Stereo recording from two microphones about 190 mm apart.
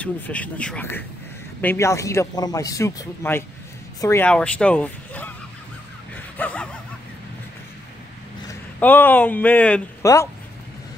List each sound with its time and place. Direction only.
0.0 s a man's voice: 5° left (ahead or behind)
6.1 s a sound: 10° left (ahead or behind)
8.5 s speech: 10° left (ahead or behind)